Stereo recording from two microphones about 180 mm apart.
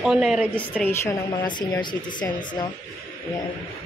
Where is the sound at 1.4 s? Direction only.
25° left (ahead or behind).